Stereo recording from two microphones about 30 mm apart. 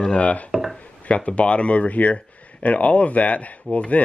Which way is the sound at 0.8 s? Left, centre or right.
Left.